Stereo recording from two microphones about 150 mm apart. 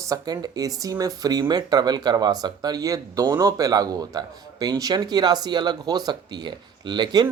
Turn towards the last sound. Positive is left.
turn(degrees=-30)  # may be behind; listen again after turning